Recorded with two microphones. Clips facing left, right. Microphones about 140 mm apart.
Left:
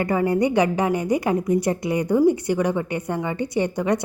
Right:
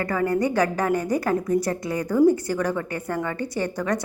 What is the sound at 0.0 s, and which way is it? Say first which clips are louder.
A woman's voice: left 3 dB; 20° left (ahead or behind).